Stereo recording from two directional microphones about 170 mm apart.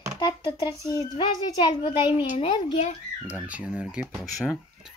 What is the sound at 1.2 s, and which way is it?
A child's voice, 25° left (ahead or behind).